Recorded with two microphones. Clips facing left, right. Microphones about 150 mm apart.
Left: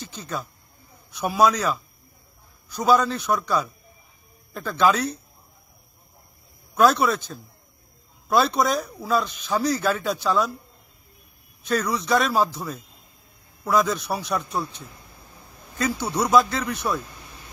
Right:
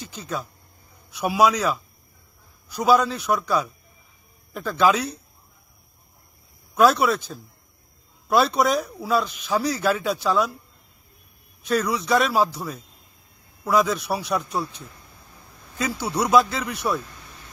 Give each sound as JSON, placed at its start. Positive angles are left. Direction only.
{"t": 0.0, "sound": "speech", "side_deg": 0}
{"t": 6.7, "sound": "speech", "side_deg": -5}
{"t": 11.6, "sound": "speech", "side_deg": 0}
{"t": 15.8, "sound": "speech", "side_deg": -5}